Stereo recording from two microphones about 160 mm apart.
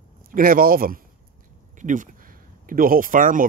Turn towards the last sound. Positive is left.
turn(degrees=-55)  # may be behind; listen again after turning